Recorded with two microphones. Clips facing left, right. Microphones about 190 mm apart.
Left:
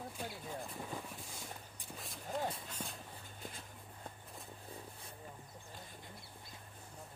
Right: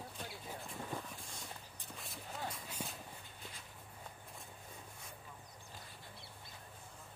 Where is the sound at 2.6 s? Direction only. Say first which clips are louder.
Even; 10° right (ahead or behind).